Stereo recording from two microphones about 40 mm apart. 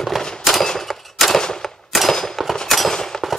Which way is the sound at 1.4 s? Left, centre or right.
Centre.